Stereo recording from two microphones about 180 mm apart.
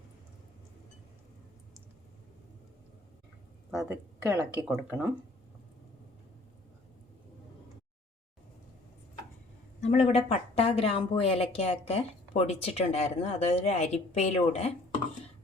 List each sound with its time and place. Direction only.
3.7 s speech: 5° right (ahead or behind)
9.8 s a woman's voice: 35° left (ahead or behind)